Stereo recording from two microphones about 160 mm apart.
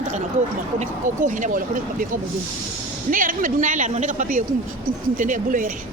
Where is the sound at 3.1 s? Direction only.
60° right (ahead or behind).